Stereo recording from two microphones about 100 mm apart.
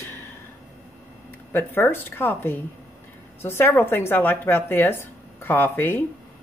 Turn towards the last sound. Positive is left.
turn(degrees=20)  # may be behind; listen again after turning